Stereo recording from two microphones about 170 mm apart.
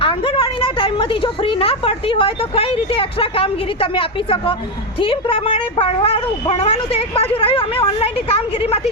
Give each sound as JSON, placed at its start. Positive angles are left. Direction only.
{"t": 0.0, "sound": "a woman's voice", "side_deg": 30}